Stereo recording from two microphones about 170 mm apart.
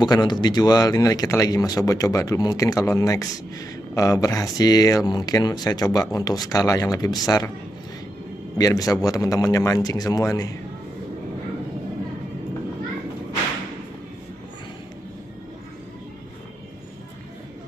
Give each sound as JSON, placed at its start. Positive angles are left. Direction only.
{"t": 0.0, "sound": "speech", "side_deg": 25}
{"t": 8.5, "sound": "speech", "side_deg": 20}